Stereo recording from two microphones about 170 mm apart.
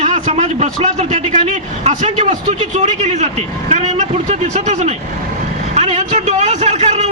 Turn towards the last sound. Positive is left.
turn(degrees=-40)  # may be behind; listen again after turning